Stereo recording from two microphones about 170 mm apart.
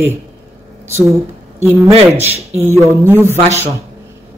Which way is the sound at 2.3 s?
40° right (ahead or behind).